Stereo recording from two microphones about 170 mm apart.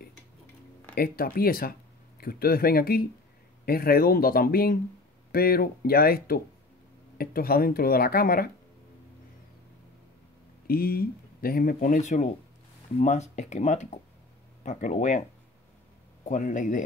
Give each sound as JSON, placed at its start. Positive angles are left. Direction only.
{"t": 0.9, "sound": "speech", "side_deg": 60}
{"t": 10.7, "sound": "speech", "side_deg": 60}
{"t": 16.3, "sound": "speech", "side_deg": 50}